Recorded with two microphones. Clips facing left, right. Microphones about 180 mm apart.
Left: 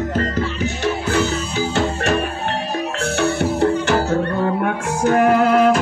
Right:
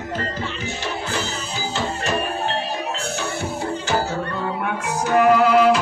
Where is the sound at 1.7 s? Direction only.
60° left (ahead or behind).